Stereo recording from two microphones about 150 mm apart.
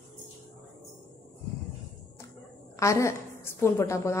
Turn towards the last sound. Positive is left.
turn(degrees=20)  # may be behind; listen again after turning